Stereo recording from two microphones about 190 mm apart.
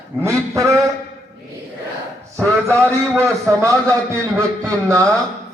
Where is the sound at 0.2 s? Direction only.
15° right (ahead or behind).